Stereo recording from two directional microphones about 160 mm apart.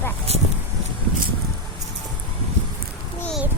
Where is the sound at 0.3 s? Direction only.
40° right (ahead or behind).